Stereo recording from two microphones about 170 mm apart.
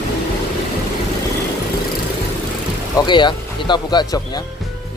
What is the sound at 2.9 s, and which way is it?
Speech, 25° left (ahead or behind).